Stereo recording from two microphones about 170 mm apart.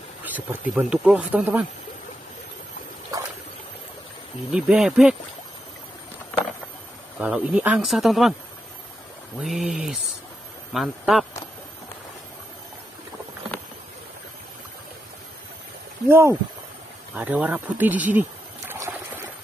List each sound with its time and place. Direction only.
0.2 s speech: 10° right (ahead or behind)
4.5 s speech: 5° right (ahead or behind)
7.2 s speech: 5° right (ahead or behind)
9.4 s speech: centre (ahead or behind)
16.1 s speech: 15° right (ahead or behind)
18.7 s trickle: 15° right (ahead or behind)